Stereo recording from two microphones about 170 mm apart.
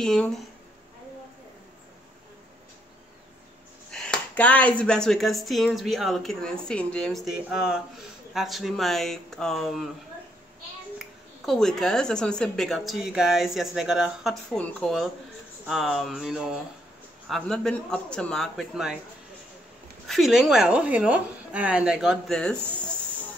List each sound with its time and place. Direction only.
0.0 s speech: 5° left (ahead or behind)
3.9 s speech: 5° left (ahead or behind)
11.4 s speech: centre (ahead or behind)
20.1 s speech: centre (ahead or behind)